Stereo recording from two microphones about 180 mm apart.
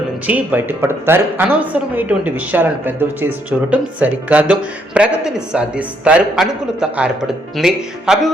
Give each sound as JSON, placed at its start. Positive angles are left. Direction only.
{"t": 0.3, "sound": "speech", "side_deg": -10}